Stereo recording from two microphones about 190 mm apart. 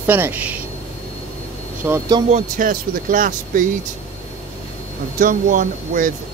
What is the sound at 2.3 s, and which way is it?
Speech, 45° right (ahead or behind).